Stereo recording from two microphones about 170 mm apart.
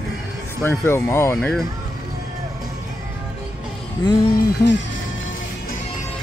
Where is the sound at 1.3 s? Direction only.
5° left (ahead or behind).